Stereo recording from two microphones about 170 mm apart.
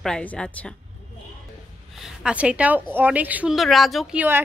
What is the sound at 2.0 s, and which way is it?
A woman's voice, 5° right (ahead or behind).